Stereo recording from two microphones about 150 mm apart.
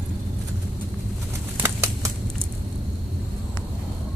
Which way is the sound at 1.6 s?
15° right (ahead or behind).